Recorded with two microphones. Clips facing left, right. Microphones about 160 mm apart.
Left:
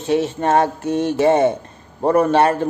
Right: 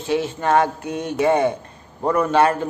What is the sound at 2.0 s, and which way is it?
Speech, 35° left (ahead or behind).